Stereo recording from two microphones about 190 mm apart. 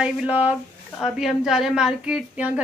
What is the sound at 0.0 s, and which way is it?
A woman's voice, 5° right (ahead or behind).